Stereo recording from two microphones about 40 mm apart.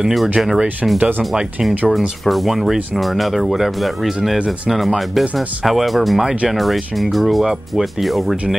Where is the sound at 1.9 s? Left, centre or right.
Centre.